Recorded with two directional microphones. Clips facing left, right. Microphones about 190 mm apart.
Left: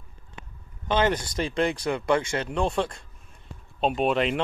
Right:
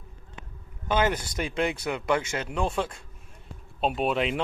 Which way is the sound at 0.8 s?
10° right (ahead or behind).